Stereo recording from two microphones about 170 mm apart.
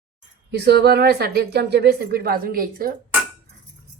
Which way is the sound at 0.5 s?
75° right (ahead or behind).